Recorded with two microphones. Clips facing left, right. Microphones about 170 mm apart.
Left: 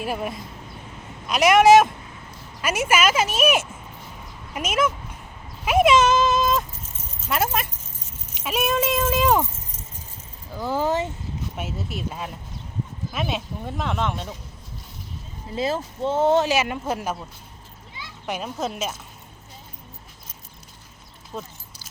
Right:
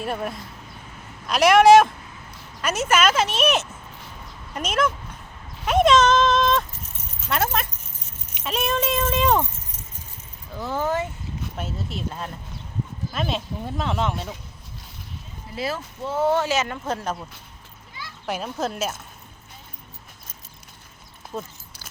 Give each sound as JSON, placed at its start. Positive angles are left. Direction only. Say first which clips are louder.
{"t": 0.0, "sound": "a woman's voice", "louder": "even", "side_deg": 5}
{"t": 5.6, "sound": "a sound", "louder": "even", "side_deg": 5}
{"t": 7.3, "sound": "speech", "louder": "even", "side_deg": 5}
{"t": 10.5, "sound": "a woman's voice", "louder": "left 2 dB", "side_deg": 10}
{"t": 11.5, "sound": "speech", "louder": "right 1 dB", "side_deg": 5}
{"t": 15.5, "sound": "a woman's voice", "louder": "left 4 dB", "side_deg": 25}
{"t": 18.3, "sound": "speech", "louder": "right 1 dB", "side_deg": 0}